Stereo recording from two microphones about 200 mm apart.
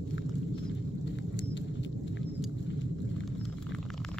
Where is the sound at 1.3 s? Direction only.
65° left (ahead or behind).